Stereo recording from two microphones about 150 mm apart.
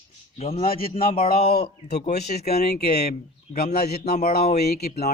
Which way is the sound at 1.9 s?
90° left.